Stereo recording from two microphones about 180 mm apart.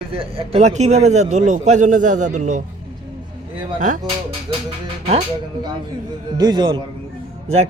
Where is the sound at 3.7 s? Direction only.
45° right (ahead or behind).